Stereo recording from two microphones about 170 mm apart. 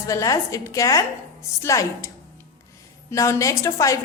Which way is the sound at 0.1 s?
20° left (ahead or behind).